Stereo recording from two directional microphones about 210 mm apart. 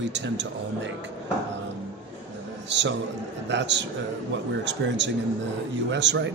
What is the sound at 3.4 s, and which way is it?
A man's voice, 55° right (ahead or behind).